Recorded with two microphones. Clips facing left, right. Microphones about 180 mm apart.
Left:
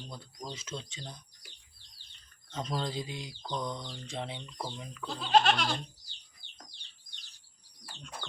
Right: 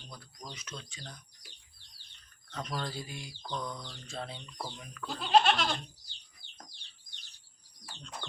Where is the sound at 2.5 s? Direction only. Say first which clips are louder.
Left 3 dB; 25° left (ahead or behind).